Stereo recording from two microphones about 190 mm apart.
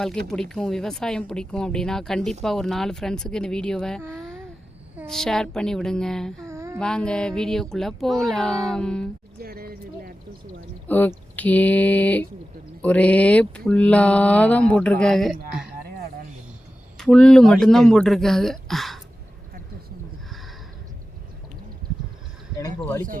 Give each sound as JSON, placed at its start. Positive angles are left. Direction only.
{"t": 0.3, "sound": "speech", "side_deg": 5}
{"t": 4.1, "sound": "a sound", "side_deg": 5}
{"t": 5.0, "sound": "speech", "side_deg": 0}
{"t": 6.5, "sound": "a sound", "side_deg": -15}
{"t": 6.7, "sound": "speech", "side_deg": 5}
{"t": 9.4, "sound": "speech", "side_deg": -50}
{"t": 10.8, "sound": "mantra", "side_deg": 10}
{"t": 17.0, "sound": "speech", "side_deg": 5}